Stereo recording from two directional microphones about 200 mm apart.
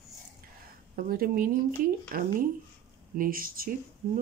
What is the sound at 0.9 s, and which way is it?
Speech, 45° right (ahead or behind).